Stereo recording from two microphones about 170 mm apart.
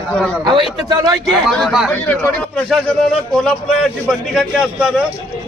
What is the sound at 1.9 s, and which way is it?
A man's voice, 10° left (ahead or behind).